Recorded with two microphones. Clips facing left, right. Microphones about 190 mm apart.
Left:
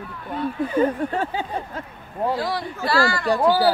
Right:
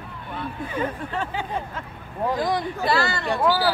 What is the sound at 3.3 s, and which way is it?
Speech, 35° left (ahead or behind).